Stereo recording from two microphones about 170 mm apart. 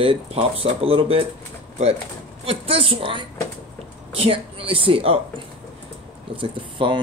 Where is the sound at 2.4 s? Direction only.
35° right (ahead or behind).